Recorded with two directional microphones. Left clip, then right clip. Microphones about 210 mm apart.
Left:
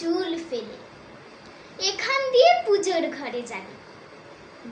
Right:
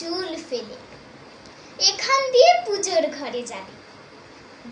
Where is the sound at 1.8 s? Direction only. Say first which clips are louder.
Right 5 dB; 15° left (ahead or behind).